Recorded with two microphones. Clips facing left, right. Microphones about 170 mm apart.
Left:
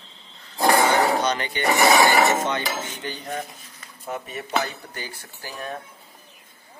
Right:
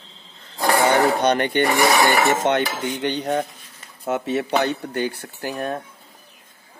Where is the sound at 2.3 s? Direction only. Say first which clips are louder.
Right 4 dB; 70° right (ahead or behind).